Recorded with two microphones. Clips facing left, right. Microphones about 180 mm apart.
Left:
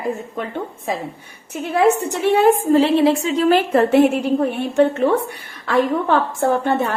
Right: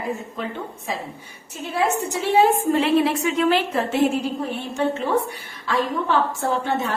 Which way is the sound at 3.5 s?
55° left (ahead or behind).